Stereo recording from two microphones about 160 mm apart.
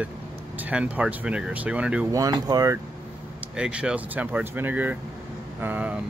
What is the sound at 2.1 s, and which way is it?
Speech, 25° right (ahead or behind).